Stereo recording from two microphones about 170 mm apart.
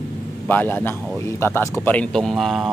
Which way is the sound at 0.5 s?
10° left (ahead or behind).